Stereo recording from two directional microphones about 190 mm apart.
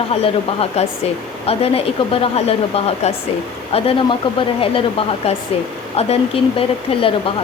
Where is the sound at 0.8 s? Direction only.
35° left (ahead or behind).